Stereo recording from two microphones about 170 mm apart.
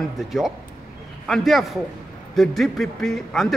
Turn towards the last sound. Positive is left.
turn(degrees=0)  # may be behind; listen again after turning